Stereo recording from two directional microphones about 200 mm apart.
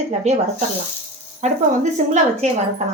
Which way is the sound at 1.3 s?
35° right (ahead or behind).